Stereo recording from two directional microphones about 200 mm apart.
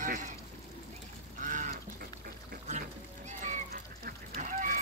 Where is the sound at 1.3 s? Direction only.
40° right (ahead or behind).